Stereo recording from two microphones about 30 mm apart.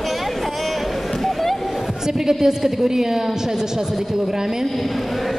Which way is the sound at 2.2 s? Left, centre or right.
Centre.